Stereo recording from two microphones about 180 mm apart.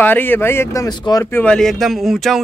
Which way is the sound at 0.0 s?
10° left (ahead or behind).